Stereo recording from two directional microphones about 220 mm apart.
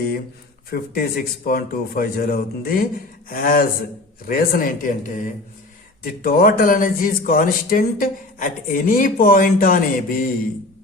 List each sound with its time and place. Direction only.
0.7 s speech: 40° left (ahead or behind)